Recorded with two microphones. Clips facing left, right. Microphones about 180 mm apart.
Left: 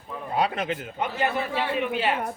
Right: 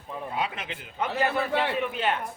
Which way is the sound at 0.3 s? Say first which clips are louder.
Left 9 dB; 40° left (ahead or behind).